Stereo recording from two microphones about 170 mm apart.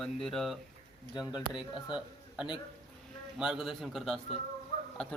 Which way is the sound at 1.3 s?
25° left (ahead or behind).